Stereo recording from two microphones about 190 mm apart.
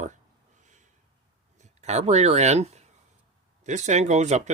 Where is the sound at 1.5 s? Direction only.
40° right (ahead or behind).